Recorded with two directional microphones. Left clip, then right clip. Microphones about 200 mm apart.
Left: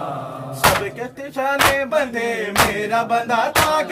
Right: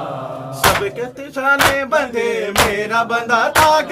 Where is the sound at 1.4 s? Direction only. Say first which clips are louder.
Right 3 dB; 10° right (ahead or behind).